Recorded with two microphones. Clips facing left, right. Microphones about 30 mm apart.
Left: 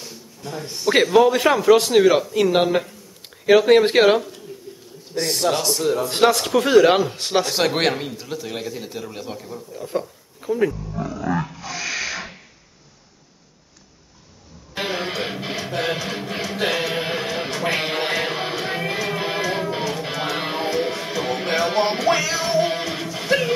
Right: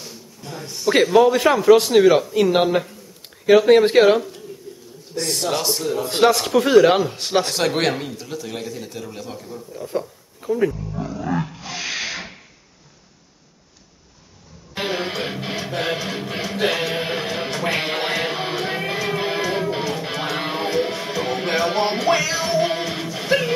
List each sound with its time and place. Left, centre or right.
0.0 s a sound: centre
0.7 s a man's voice: centre
5.9 s a man's voice: centre
11.6 s rub: right
14.7 s music: centre